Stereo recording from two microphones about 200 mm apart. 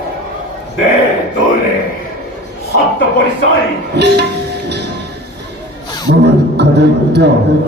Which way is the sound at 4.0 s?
55° right (ahead or behind).